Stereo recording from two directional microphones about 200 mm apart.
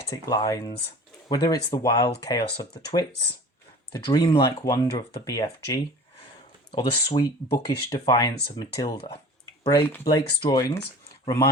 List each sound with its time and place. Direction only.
0.1 s speech: 20° left (ahead or behind)
9.7 s speech: 15° left (ahead or behind)
10.6 s speech: 15° left (ahead or behind)